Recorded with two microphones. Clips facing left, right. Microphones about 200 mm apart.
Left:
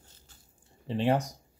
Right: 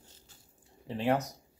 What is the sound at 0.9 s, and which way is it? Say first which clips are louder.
Speech: left 2 dB; 15° left (ahead or behind).